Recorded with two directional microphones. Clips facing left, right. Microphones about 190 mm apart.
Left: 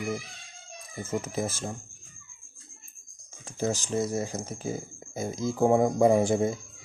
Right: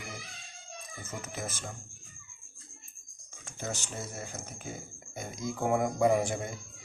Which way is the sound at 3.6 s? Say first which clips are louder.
Left 11 dB; 35° left (ahead or behind).